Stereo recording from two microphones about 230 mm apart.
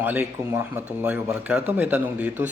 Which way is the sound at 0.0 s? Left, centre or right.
Centre.